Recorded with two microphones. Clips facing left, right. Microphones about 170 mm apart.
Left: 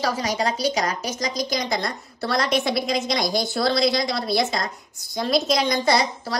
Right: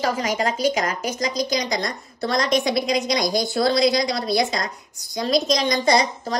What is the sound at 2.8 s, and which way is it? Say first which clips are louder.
Speech: right 2 dB; 50° right (ahead or behind).